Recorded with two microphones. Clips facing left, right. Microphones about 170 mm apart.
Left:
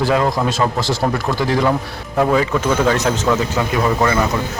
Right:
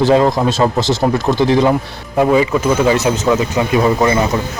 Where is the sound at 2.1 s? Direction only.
10° right (ahead or behind).